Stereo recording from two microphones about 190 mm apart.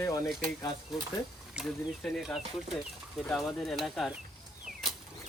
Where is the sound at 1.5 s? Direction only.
Centre (ahead or behind).